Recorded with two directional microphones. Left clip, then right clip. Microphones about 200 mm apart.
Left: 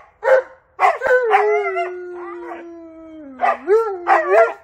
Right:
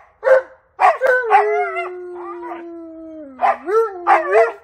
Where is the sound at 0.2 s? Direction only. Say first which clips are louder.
Right 1 dB; centre (ahead or behind).